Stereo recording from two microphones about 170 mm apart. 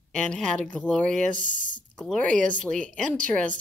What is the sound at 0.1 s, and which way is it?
A woman's voice, 5° left (ahead or behind).